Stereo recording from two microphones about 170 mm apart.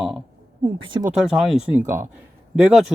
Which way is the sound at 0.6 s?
30° right (ahead or behind).